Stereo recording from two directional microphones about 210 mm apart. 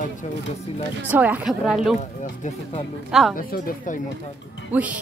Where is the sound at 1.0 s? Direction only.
10° right (ahead or behind).